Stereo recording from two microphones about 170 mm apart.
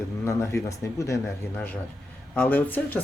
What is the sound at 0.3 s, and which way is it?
Speech, 15° left (ahead or behind).